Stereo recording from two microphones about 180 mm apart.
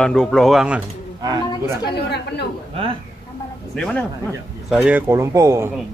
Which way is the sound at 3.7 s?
5° left (ahead or behind).